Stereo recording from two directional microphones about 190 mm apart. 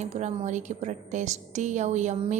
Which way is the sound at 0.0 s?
40° right (ahead or behind).